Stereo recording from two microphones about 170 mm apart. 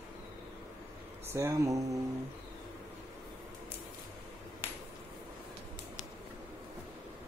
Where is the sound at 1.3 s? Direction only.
15° right (ahead or behind).